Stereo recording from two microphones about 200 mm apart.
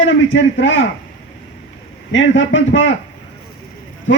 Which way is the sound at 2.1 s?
70° left (ahead or behind).